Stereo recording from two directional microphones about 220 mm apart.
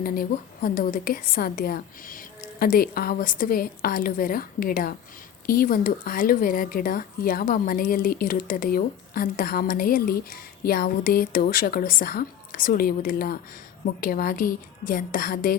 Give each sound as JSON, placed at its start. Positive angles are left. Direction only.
{"t": 0.0, "sound": "speech", "side_deg": 40}